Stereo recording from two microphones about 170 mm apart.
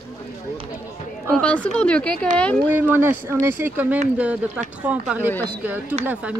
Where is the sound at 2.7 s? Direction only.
10° right (ahead or behind).